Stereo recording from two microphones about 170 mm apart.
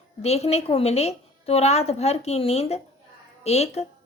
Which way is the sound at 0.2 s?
40° left (ahead or behind).